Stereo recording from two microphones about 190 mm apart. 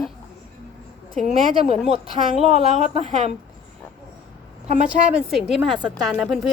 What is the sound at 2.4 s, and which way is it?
Speech, 35° right (ahead or behind).